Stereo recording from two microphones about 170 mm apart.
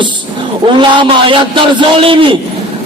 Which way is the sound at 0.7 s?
30° right (ahead or behind).